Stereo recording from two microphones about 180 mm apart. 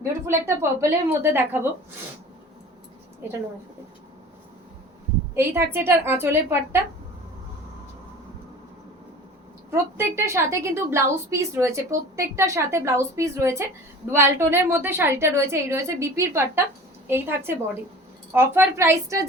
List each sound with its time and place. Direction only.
0.3 s a woman's voice: 15° right (ahead or behind)
5.3 s a woman's voice: 10° right (ahead or behind)
10.0 s a woman's voice: 15° right (ahead or behind)